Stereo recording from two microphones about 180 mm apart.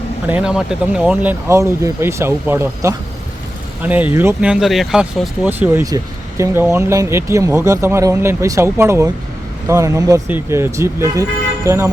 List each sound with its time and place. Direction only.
0.3 s speech: 5° right (ahead or behind)